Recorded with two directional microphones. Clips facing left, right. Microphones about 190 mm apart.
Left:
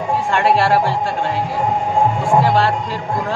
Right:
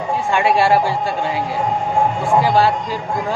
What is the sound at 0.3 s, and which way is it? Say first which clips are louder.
Speech: right 1 dB; centre (ahead or behind).